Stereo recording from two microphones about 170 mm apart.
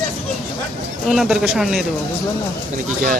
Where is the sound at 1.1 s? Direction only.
Centre (ahead or behind).